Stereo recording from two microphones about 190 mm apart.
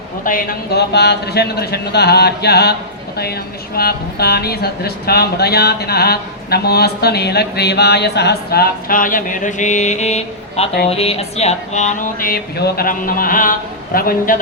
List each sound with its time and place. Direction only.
0.3 s speech: 55° left (ahead or behind)
3.8 s speech: 55° left (ahead or behind); by 10.7 s 35° left (ahead or behind)
10.8 s a sound: 30° left (ahead or behind); by 14.3 s 50° left (ahead or behind)